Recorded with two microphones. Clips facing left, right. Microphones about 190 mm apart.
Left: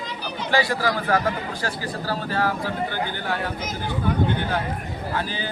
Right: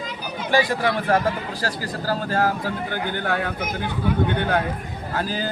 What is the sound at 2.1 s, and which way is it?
Speech, 45° right (ahead or behind).